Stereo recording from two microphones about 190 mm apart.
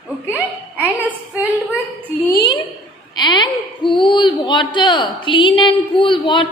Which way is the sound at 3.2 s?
25° left (ahead or behind).